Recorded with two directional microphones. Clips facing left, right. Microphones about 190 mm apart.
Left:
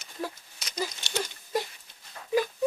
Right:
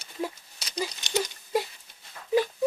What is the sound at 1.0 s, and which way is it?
Mechanisms, 15° right (ahead or behind).